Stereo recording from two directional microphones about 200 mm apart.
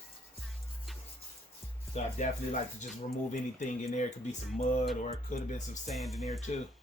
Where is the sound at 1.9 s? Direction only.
35° left (ahead or behind).